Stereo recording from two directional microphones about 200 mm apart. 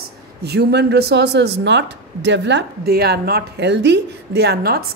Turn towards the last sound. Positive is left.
turn(degrees=-50)  # may be behind; listen again after turning